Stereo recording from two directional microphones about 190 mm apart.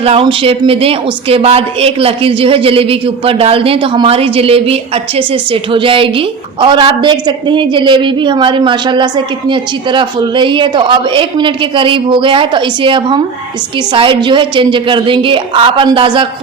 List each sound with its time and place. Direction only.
0.0 s a woman's voice: 30° right (ahead or behind)